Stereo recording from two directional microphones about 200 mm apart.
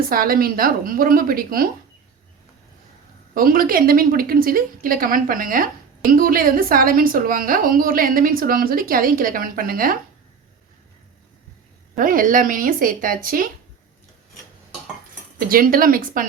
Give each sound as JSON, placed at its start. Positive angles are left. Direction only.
{"t": 0.1, "sound": "a woman's voice", "side_deg": -45}
{"t": 3.3, "sound": "a woman's voice", "side_deg": -45}
{"t": 11.9, "sound": "a woman's voice", "side_deg": -45}
{"t": 15.4, "sound": "a woman's voice", "side_deg": -45}